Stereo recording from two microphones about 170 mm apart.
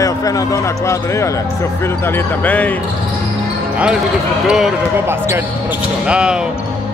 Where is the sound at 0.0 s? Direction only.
20° left (ahead or behind).